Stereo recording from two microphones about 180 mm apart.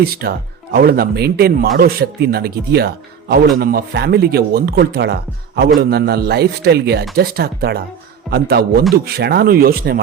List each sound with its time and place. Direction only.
0.0 s speech: 60° right (ahead or behind)